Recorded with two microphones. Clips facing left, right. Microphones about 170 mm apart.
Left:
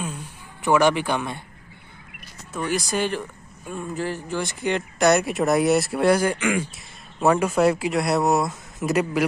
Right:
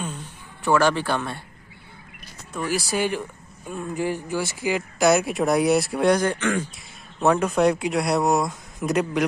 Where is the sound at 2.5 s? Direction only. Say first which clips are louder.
Even; centre (ahead or behind).